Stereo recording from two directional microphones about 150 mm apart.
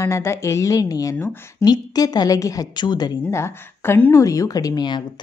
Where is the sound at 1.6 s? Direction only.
25° left (ahead or behind).